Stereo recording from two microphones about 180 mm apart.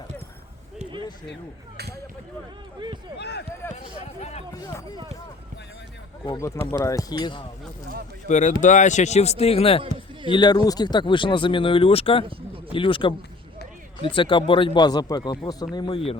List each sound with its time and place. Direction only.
0.8 s a sound: 25° right (ahead or behind)
3.2 s speech: 70° left (ahead or behind)
4.2 s speech: 35° left (ahead or behind)
4.6 s speech: 20° left (ahead or behind)
6.2 s speech: 15° left (ahead or behind)
8.3 s speech: 40° left (ahead or behind)